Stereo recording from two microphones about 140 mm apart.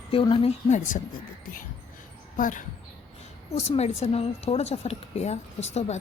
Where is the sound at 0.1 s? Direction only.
40° left (ahead or behind).